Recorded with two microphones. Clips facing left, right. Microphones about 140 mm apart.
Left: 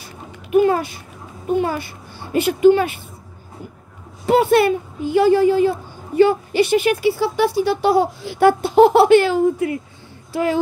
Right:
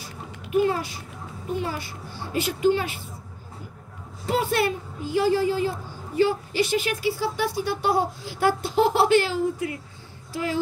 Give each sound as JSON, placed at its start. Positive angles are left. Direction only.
{"t": 0.0, "sound": "a sound", "side_deg": 55}
{"t": 1.5, "sound": "speech", "side_deg": 55}
{"t": 4.3, "sound": "speech", "side_deg": 65}